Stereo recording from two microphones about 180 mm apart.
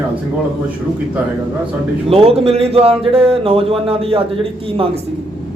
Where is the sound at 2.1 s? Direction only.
35° right (ahead or behind).